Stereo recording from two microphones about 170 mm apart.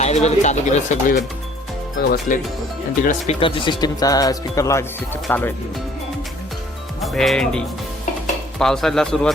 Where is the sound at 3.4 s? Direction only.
30° left (ahead or behind); by 5.5 s 10° left (ahead or behind).